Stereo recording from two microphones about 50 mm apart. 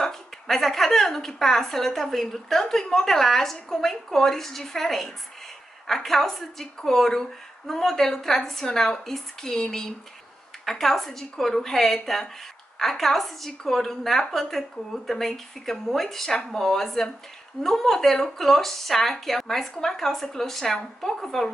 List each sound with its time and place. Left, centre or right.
0.0 s a woman's voice: centre